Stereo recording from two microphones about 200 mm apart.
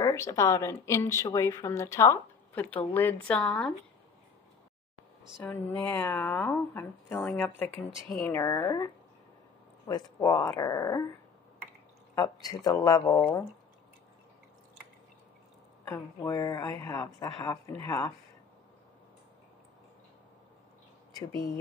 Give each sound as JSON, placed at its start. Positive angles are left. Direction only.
{"t": 0.0, "sound": "speech", "side_deg": 15}
{"t": 5.4, "sound": "speech", "side_deg": 5}
{"t": 9.8, "sound": "speech", "side_deg": 20}
{"t": 12.2, "sound": "speech", "side_deg": 15}
{"t": 15.8, "sound": "speech", "side_deg": 10}